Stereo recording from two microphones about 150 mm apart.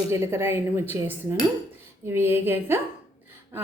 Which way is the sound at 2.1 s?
15° right (ahead or behind).